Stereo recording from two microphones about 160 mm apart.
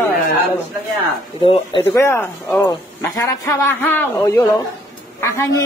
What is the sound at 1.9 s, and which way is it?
A man's voice, 15° left (ahead or behind).